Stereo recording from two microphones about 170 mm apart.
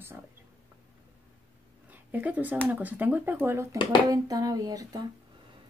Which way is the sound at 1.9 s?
10° right (ahead or behind).